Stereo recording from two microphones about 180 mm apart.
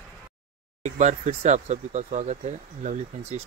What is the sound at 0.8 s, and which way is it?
Speech, 40° right (ahead or behind).